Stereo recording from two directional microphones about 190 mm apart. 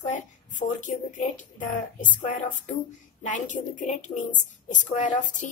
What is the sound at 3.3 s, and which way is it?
A woman's voice, 40° left (ahead or behind).